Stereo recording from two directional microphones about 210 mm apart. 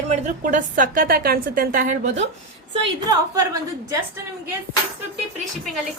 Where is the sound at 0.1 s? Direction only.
35° right (ahead or behind).